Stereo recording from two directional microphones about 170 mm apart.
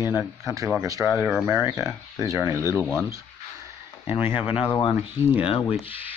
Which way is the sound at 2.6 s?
15° left (ahead or behind).